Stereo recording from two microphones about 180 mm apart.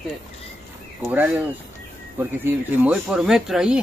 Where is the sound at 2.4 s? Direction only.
5° right (ahead or behind).